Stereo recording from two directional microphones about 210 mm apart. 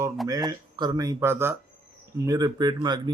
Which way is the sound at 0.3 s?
20° right (ahead or behind).